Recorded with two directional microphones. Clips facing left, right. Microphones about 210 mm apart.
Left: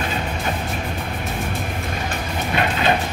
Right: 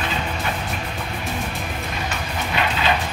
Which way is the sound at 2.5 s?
50° left (ahead or behind).